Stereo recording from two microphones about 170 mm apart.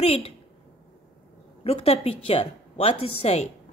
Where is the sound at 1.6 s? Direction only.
35° left (ahead or behind).